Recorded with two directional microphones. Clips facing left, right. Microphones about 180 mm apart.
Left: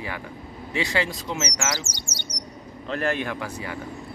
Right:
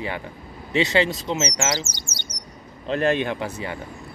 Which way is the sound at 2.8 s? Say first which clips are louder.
Right 5 dB; 20° right (ahead or behind).